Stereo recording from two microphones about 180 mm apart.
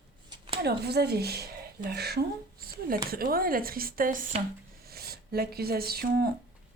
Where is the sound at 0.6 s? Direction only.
65° right (ahead or behind).